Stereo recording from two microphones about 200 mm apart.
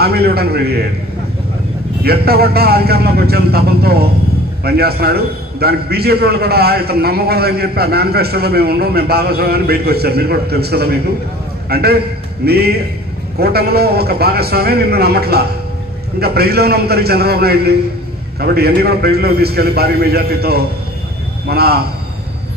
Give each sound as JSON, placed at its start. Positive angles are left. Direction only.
{"t": 0.0, "sound": "a man's voice", "side_deg": -50}
{"t": 2.0, "sound": "a man's voice", "side_deg": -50}